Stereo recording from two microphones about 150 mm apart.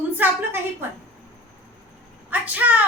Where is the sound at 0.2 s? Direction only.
15° right (ahead or behind).